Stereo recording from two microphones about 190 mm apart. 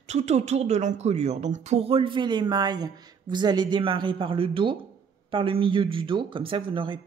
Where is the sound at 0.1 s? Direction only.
35° right (ahead or behind).